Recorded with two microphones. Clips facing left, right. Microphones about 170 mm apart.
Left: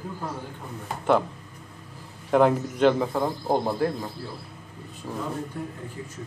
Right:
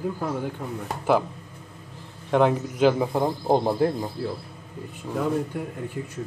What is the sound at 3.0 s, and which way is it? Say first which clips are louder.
Speech: right 2 dB; 15° right (ahead or behind).